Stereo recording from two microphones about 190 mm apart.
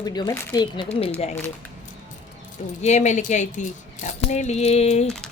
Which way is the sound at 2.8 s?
40° left (ahead or behind).